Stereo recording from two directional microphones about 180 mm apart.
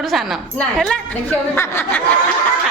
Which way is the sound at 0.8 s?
5° left (ahead or behind).